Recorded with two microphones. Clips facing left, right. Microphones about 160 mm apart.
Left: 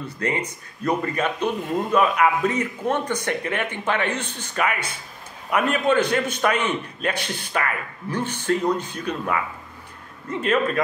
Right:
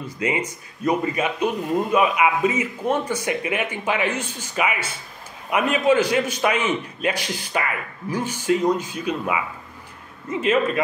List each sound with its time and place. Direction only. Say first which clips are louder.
0.0 s speech: right 1 dB; 10° right (ahead or behind)